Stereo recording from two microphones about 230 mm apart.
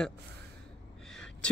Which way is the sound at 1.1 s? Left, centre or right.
Centre.